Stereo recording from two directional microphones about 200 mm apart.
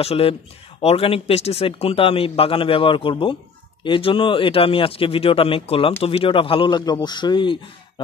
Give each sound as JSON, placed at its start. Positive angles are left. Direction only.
{"t": 0.0, "sound": "speech", "side_deg": 30}